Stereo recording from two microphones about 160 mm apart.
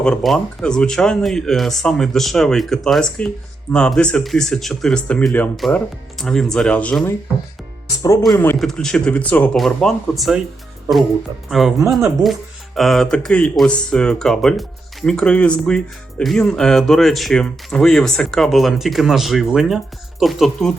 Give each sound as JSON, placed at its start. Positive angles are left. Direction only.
{"t": 0.0, "sound": "speech", "side_deg": 5}
{"t": 8.5, "sound": "speech", "side_deg": 0}
{"t": 11.4, "sound": "speech", "side_deg": 0}